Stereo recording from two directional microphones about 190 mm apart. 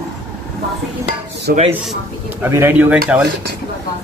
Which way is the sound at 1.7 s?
10° right (ahead or behind).